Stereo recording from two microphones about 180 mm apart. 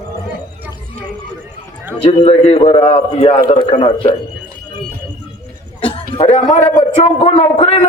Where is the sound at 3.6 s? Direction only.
40° left (ahead or behind).